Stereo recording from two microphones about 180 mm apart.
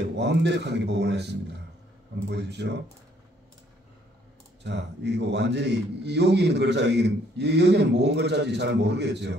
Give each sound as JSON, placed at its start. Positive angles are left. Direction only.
{"t": 0.2, "sound": "a man's voice", "side_deg": -70}
{"t": 4.6, "sound": "a man's voice", "side_deg": -75}